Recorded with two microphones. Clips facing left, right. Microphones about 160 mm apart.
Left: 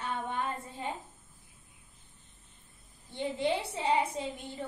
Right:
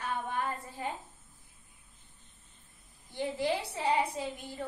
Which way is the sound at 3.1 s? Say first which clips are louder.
Left 1 dB; 25° left (ahead or behind).